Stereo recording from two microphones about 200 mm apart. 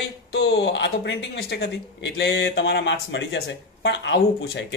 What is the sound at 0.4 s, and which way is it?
Speech, 60° left (ahead or behind).